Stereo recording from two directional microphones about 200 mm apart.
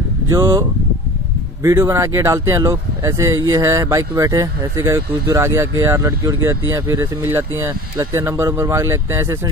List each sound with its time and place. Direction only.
0.3 s speech: 15° right (ahead or behind)